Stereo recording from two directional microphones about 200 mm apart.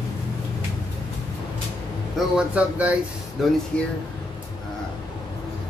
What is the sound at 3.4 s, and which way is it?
Speech, centre (ahead or behind).